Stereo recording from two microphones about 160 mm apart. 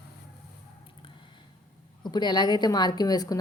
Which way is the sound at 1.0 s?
30° left (ahead or behind).